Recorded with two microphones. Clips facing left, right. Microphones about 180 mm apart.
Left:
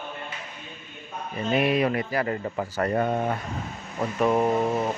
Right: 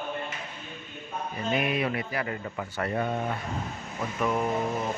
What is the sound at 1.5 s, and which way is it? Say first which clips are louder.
A man's voice: left 6 dB; 35° left (ahead or behind).